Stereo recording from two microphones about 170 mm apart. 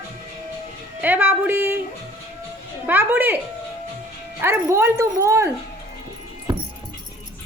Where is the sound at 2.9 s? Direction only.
10° right (ahead or behind).